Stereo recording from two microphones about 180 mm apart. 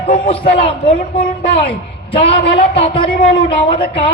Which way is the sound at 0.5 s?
35° left (ahead or behind).